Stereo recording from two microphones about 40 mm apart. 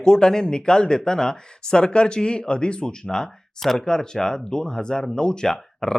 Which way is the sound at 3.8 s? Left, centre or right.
Centre.